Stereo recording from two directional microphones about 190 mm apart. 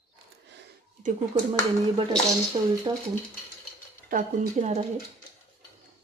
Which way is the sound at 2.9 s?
20° right (ahead or behind).